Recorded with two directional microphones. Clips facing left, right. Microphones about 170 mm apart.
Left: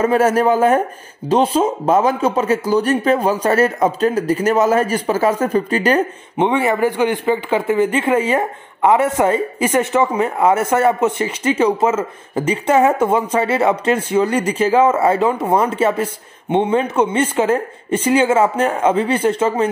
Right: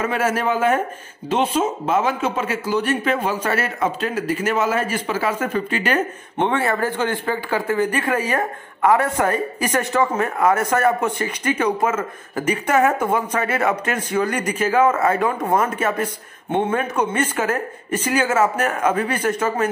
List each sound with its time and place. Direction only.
0.0 s speech: 40° left (ahead or behind)
6.3 s a man's voice: 15° left (ahead or behind)